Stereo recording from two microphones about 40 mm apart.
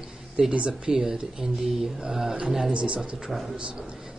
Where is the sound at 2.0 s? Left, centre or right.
Centre.